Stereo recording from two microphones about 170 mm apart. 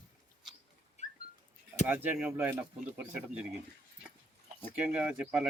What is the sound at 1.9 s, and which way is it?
Speech, 10° right (ahead or behind).